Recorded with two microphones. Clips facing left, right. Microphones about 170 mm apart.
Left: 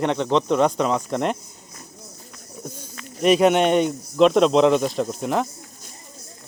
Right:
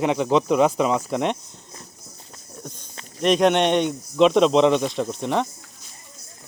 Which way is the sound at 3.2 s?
5° left (ahead or behind).